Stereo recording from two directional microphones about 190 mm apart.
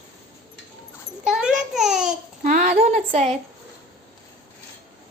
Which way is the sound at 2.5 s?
40° right (ahead or behind).